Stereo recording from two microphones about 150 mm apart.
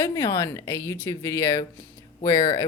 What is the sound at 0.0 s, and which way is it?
Speech, 25° left (ahead or behind).